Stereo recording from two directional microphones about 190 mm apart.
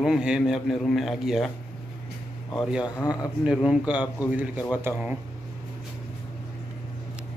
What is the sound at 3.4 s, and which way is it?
A man's voice, 5° right (ahead or behind).